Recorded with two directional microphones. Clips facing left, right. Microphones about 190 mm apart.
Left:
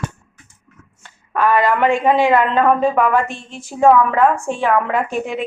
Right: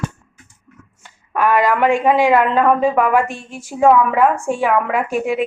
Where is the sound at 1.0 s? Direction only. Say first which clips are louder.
Even; 10° right (ahead or behind).